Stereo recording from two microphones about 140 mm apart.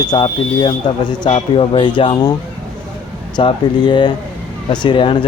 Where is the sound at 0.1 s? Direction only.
35° left (ahead or behind).